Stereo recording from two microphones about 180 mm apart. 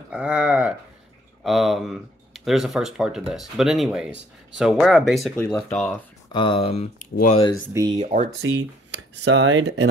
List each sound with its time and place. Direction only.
0.1 s a sound: 5° right (ahead or behind)
1.4 s speech: centre (ahead or behind)
6.3 s speech: 30° left (ahead or behind)
7.7 s speech: 20° right (ahead or behind)
8.0 s speech: 45° right (ahead or behind)
8.4 s speech: 80° right